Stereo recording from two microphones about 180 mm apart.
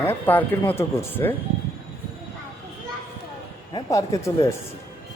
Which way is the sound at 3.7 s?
20° left (ahead or behind).